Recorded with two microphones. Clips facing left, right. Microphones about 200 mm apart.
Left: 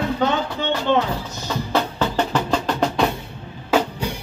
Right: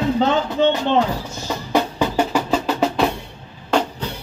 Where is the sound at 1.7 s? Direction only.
10° right (ahead or behind).